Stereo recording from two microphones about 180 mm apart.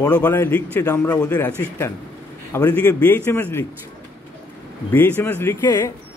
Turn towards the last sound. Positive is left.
turn(degrees=20)  # may be behind; listen again after turning